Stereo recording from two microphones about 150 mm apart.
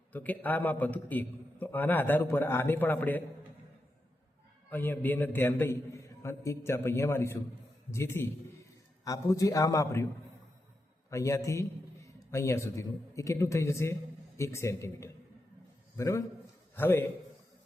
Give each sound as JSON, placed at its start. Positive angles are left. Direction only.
{"t": 0.1, "sound": "a man's voice", "side_deg": 10}
{"t": 4.7, "sound": "a man's voice", "side_deg": 15}
{"t": 11.1, "sound": "a man's voice", "side_deg": 20}